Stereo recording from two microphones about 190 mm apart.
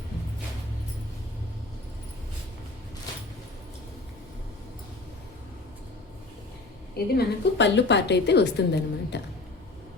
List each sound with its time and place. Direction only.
6.9 s a woman's voice: 55° left (ahead or behind)